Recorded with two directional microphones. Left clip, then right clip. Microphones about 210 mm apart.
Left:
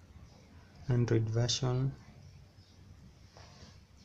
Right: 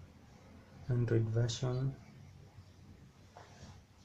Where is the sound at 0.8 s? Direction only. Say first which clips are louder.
Left 3 dB; 25° left (ahead or behind).